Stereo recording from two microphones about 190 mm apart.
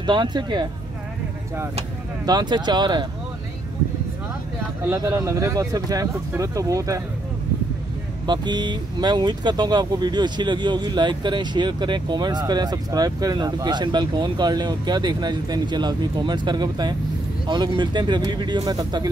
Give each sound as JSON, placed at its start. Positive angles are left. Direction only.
{"t": 0.0, "sound": "speech", "side_deg": -25}
{"t": 2.2, "sound": "speech", "side_deg": -20}
{"t": 4.8, "sound": "speech", "side_deg": -15}
{"t": 8.3, "sound": "speech", "side_deg": -25}